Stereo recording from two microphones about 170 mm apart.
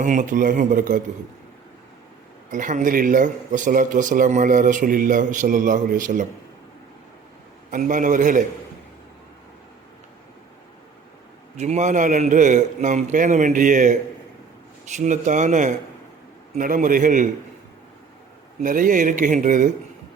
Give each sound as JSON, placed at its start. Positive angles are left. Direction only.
{"t": 0.0, "sound": "a man's voice", "side_deg": -50}
{"t": 2.5, "sound": "a man's voice", "side_deg": -50}
{"t": 7.7, "sound": "a man's voice", "side_deg": -50}
{"t": 11.5, "sound": "a man's voice", "side_deg": -40}
{"t": 14.9, "sound": "a man's voice", "side_deg": -45}
{"t": 18.6, "sound": "a man's voice", "side_deg": -50}